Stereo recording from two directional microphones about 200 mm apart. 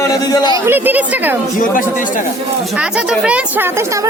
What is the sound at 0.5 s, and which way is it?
Speech, 10° right (ahead or behind).